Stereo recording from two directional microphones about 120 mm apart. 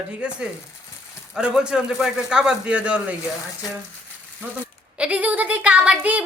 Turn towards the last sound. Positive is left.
turn(degrees=-10)  # may be behind; listen again after turning